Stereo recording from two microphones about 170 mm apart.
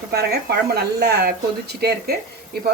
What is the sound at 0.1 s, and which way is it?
Speech, 70° right (ahead or behind).